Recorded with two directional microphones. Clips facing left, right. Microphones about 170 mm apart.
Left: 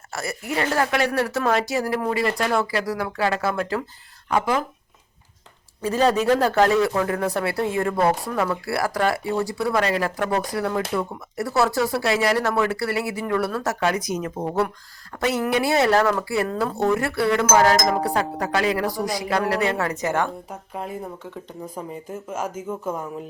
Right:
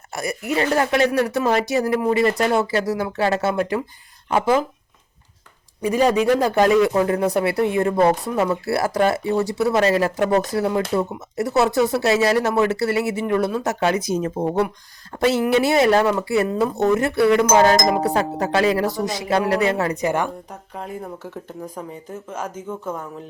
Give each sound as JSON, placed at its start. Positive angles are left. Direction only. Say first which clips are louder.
{"t": 0.1, "sound": "speech", "louder": "right 4 dB", "side_deg": -20}
{"t": 5.8, "sound": "speech", "louder": "right 2 dB", "side_deg": -15}
{"t": 20.5, "sound": "a woman's voice", "louder": "left 1 dB", "side_deg": 5}